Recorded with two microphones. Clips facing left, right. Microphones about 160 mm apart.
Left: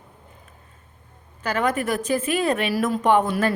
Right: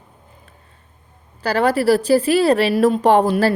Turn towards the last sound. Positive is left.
turn(degrees=-35)  # may be behind; listen again after turning